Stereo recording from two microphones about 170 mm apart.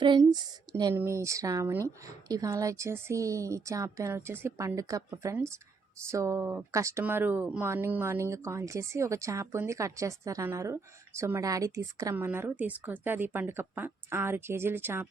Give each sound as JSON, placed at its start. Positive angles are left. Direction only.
{"t": 0.0, "sound": "speech", "side_deg": -25}